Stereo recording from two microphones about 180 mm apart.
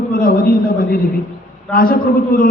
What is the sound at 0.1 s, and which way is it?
Speech, 55° left (ahead or behind).